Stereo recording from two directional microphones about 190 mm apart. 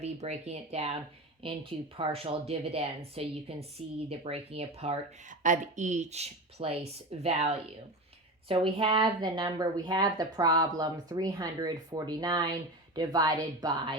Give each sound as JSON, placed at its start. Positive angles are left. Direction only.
{"t": 0.0, "sound": "a woman's voice", "side_deg": -35}